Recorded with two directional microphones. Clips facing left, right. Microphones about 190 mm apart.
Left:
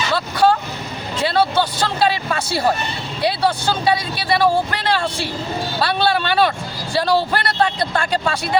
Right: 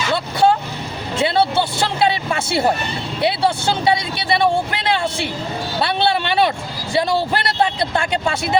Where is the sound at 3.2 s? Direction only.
25° right (ahead or behind).